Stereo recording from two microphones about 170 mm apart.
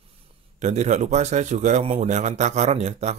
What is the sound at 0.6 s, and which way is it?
A man's voice, 45° right (ahead or behind).